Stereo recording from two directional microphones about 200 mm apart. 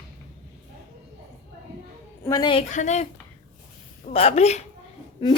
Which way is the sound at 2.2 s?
15° left (ahead or behind).